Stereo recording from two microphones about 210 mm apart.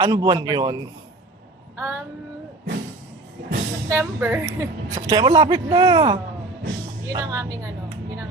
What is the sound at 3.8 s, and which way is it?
A man's voice, 10° right (ahead or behind).